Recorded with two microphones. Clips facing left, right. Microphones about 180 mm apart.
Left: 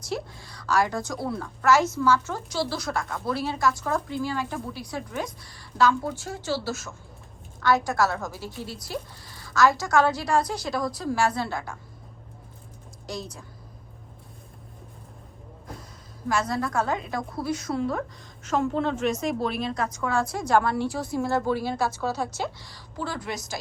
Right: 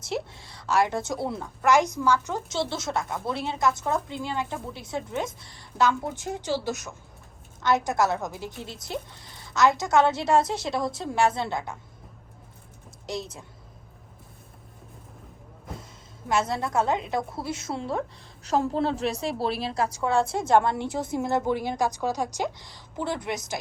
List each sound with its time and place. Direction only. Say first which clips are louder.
0.0 s a woman's voice: right 1 dB; 25° right (ahead or behind)
16.3 s a woman's voice: right 1 dB; 25° right (ahead or behind)